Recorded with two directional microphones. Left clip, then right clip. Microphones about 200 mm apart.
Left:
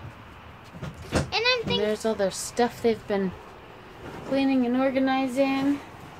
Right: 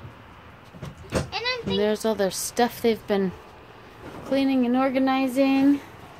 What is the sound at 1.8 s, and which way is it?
A woman's voice, 40° right (ahead or behind).